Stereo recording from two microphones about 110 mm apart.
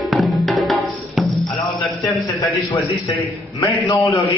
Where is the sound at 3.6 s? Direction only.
30° left (ahead or behind).